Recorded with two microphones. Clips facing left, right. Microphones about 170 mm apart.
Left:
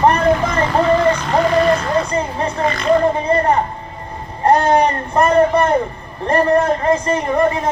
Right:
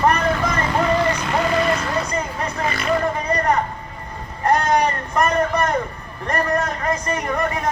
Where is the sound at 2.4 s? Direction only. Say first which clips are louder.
Left 6 dB; 30° left (ahead or behind).